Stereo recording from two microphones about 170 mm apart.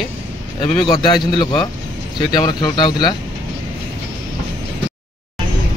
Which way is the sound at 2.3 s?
25° left (ahead or behind).